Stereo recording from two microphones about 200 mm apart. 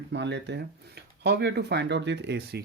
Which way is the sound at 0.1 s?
60° right (ahead or behind).